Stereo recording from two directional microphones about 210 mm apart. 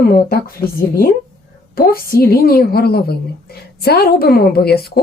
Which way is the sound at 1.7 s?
45° left (ahead or behind).